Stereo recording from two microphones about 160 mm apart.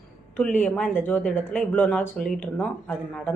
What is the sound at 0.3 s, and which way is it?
A woman's voice, 10° left (ahead or behind).